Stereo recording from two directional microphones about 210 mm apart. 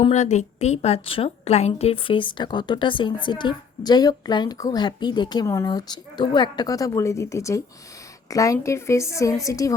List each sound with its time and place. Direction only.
0.0 s a woman's voice: 35° left (ahead or behind); by 9.7 s 15° left (ahead or behind)